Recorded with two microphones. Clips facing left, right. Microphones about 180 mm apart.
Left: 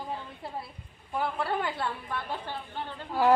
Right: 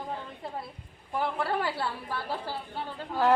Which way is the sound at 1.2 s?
Centre (ahead or behind).